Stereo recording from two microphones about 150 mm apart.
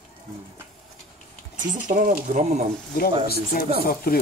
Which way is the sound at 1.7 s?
60° right (ahead or behind).